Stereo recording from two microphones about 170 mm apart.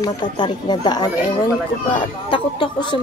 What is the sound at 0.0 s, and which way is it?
A woman's voice, 25° left (ahead or behind).